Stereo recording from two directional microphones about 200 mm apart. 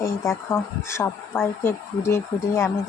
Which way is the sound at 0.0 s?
15° left (ahead or behind).